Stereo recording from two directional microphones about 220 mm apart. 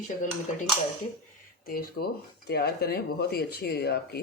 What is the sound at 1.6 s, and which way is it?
Speech, 40° left (ahead or behind).